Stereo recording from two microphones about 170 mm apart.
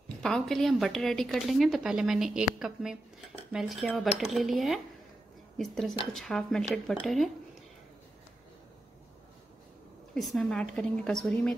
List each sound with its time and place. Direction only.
0.2 s a woman's voice: 5° left (ahead or behind)
6.1 s a woman's voice: 5° left (ahead or behind)
10.1 s a woman's voice: centre (ahead or behind)